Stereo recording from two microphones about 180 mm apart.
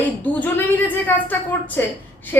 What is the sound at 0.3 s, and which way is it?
A woman's voice, 10° left (ahead or behind).